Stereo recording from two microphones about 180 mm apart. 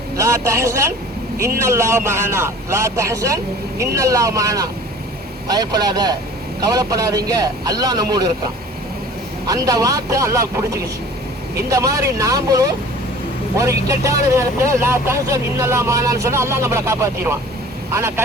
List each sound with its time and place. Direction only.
0.2 s a man's voice: 15° right (ahead or behind)
9.5 s a man's voice: 20° right (ahead or behind)
11.7 s a man's voice: 15° right (ahead or behind)